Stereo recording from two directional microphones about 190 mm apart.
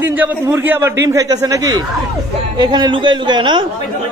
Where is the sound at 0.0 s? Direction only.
10° right (ahead or behind).